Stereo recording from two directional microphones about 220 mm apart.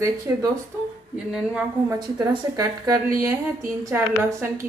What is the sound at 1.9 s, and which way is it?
A woman's voice, 15° right (ahead or behind).